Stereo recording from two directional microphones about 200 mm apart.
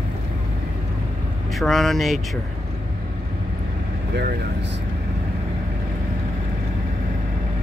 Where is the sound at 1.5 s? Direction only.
Centre (ahead or behind).